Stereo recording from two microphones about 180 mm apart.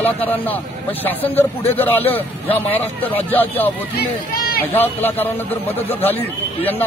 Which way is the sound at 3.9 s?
55° left (ahead or behind).